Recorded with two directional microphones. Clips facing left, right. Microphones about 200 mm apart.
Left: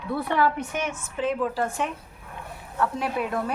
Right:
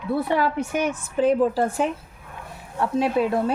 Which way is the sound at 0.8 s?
35° right (ahead or behind).